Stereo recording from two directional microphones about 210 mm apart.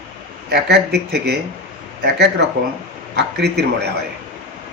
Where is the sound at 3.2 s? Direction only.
50° right (ahead or behind).